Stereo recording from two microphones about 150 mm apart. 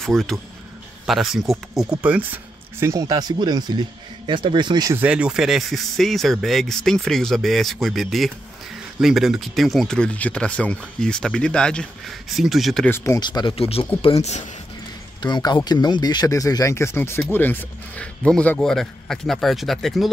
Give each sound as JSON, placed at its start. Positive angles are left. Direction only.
{"t": 0.0, "sound": "speech", "side_deg": 0}
{"t": 4.9, "sound": "speech", "side_deg": -10}
{"t": 12.8, "sound": "speech", "side_deg": 15}
{"t": 13.2, "sound": "speech", "side_deg": 30}
{"t": 15.2, "sound": "speech", "side_deg": 30}